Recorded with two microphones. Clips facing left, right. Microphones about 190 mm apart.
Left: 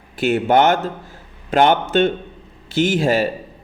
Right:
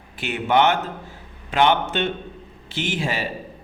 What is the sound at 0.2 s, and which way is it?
A man's voice, 45° left (ahead or behind).